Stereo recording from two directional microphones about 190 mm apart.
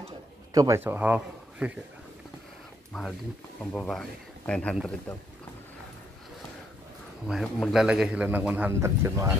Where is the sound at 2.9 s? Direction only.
Centre (ahead or behind).